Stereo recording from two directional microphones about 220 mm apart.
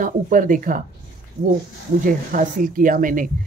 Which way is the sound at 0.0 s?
40° right (ahead or behind).